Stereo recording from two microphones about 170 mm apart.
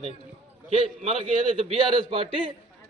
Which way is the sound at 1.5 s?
35° right (ahead or behind).